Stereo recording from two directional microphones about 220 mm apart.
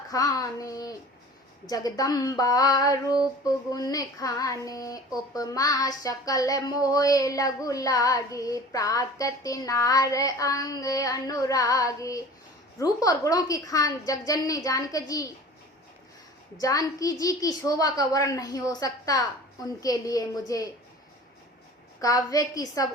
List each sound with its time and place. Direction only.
0.1 s female singing: 15° left (ahead or behind)
16.6 s female singing: 15° left (ahead or behind)
22.0 s female singing: 15° left (ahead or behind)